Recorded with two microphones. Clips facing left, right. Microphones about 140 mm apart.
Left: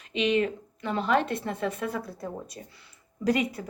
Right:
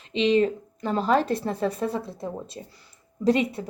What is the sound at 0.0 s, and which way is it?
A woman's voice, 30° right (ahead or behind).